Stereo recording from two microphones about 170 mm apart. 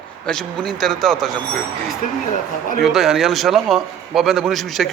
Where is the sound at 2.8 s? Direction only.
Centre (ahead or behind).